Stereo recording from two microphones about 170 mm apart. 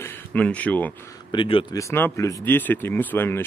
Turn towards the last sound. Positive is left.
turn(degrees=10)  # may be behind; listen again after turning